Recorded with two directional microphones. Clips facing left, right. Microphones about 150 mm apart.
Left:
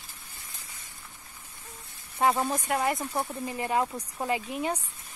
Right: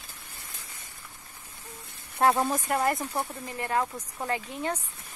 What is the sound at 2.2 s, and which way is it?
Speech, 5° right (ahead or behind).